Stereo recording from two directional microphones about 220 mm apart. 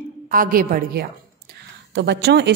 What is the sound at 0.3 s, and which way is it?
A woman's voice, 40° right (ahead or behind).